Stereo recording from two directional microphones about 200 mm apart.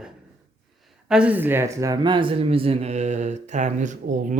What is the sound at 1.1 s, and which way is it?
Speech, 5° right (ahead or behind).